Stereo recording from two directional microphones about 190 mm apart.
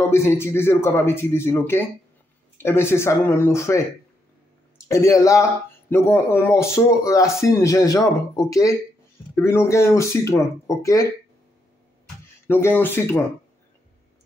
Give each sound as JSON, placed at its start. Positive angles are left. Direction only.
{"t": 0.1, "sound": "speech", "side_deg": 15}
{"t": 4.8, "sound": "speech", "side_deg": 15}
{"t": 12.4, "sound": "speech", "side_deg": 10}